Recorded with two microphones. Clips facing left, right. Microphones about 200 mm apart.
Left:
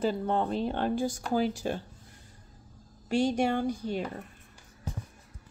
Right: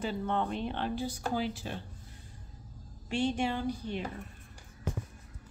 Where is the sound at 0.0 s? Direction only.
35° left (ahead or behind).